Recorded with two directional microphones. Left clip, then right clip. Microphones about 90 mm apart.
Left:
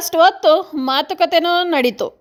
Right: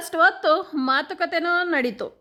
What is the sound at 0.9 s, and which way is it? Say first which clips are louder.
A woman's voice: left 8 dB; 30° left (ahead or behind).